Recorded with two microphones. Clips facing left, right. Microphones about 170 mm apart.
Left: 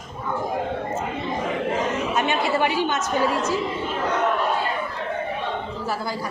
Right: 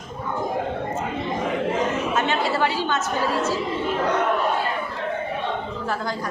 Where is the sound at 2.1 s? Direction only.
15° left (ahead or behind).